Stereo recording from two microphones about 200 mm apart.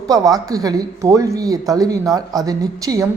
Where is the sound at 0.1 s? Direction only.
15° right (ahead or behind).